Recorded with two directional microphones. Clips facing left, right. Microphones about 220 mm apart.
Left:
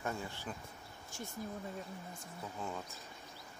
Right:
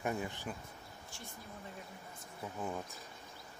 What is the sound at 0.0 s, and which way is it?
Speech, 15° right (ahead or behind).